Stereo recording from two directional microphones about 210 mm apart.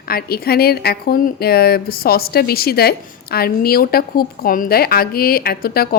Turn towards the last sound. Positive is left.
turn(degrees=45)  # may be behind; listen again after turning